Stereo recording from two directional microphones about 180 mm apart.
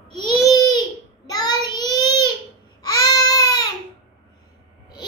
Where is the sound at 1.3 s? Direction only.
20° left (ahead or behind).